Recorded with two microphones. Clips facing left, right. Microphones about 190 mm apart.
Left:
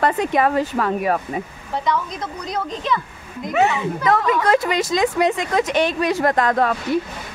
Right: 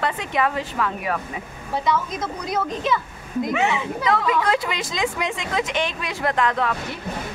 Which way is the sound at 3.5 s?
40° left (ahead or behind).